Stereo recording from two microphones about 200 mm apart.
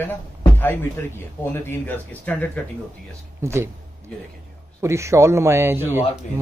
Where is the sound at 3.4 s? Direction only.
15° right (ahead or behind).